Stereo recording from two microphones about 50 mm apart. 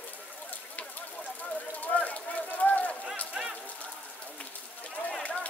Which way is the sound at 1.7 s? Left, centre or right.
Left.